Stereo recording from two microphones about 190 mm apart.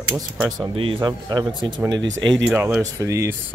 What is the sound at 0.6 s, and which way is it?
Speech, 25° right (ahead or behind).